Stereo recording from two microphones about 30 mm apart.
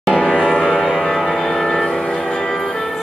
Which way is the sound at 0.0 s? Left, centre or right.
Centre.